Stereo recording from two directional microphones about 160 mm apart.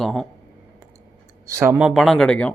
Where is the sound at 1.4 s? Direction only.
15° right (ahead or behind).